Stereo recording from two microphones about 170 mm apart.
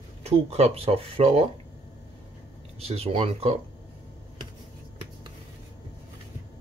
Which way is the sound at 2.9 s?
35° right (ahead or behind).